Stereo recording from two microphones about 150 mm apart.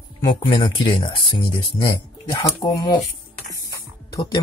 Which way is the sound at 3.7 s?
25° left (ahead or behind).